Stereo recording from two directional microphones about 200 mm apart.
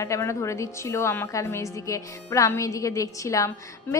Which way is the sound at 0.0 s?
15° left (ahead or behind).